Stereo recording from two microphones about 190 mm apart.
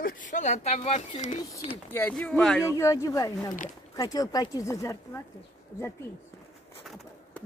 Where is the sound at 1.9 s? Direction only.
5° left (ahead or behind).